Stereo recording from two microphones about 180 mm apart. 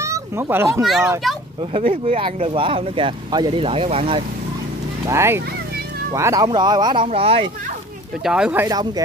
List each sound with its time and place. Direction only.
0.0 s speech: 15° right (ahead or behind)
0.8 s speech: centre (ahead or behind)
1.7 s speech: 35° right (ahead or behind)
5.0 s speech: 15° right (ahead or behind); by 7.4 s 30° right (ahead or behind)
8.3 s speech: 5° right (ahead or behind)
8.6 s speech: 20° right (ahead or behind)